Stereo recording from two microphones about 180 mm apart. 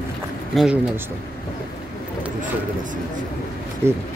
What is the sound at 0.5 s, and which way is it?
Speech, 5° right (ahead or behind).